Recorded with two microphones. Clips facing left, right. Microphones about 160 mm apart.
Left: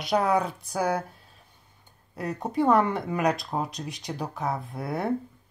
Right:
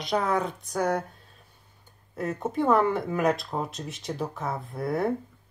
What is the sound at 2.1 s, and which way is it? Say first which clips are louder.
A woman's voice: left 1 dB; centre (ahead or behind).